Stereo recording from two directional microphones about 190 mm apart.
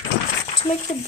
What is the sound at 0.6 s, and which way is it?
Speech, 35° left (ahead or behind).